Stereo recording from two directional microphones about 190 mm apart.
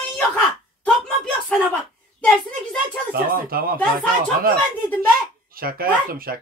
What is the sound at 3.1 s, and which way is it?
Speech, 50° right (ahead or behind).